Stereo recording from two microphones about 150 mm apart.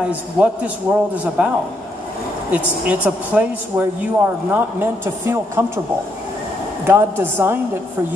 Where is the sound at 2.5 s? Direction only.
10° right (ahead or behind).